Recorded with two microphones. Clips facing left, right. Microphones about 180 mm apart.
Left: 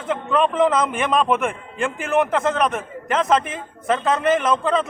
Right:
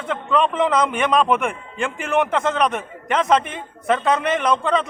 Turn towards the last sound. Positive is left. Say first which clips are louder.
# even
turn(degrees=0)  # may be behind; listen again after turning